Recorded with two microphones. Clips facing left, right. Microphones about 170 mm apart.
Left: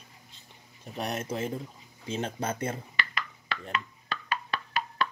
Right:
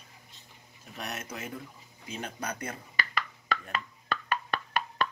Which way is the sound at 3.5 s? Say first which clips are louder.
Even; 45° right (ahead or behind).